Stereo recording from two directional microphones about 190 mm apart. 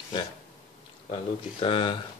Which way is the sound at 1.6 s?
25° left (ahead or behind).